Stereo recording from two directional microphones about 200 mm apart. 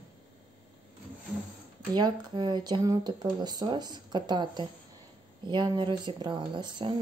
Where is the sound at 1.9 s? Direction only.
20° right (ahead or behind).